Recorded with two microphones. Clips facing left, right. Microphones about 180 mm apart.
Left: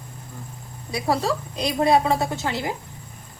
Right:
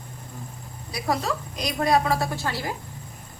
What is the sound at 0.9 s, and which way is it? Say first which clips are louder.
A woman's voice: left 3 dB; 30° left (ahead or behind).